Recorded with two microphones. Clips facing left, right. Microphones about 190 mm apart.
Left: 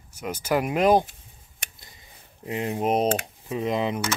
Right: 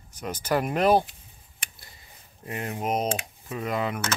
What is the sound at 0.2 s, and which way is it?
Speech, 10° left (ahead or behind).